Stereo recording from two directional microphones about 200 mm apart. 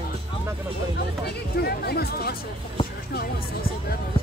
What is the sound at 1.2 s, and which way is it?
Chatter, 55° left (ahead or behind).